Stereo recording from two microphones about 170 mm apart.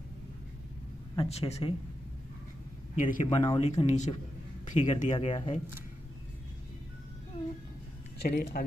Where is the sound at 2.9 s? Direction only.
50° left (ahead or behind).